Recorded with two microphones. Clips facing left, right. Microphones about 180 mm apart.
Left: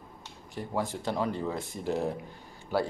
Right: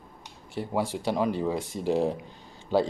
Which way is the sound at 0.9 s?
15° right (ahead or behind).